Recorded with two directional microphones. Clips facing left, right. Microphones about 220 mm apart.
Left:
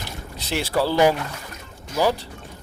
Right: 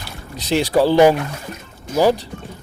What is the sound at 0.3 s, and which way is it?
Speech, 15° right (ahead or behind).